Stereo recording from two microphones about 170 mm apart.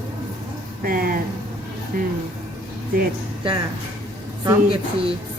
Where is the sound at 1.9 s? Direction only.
55° right (ahead or behind).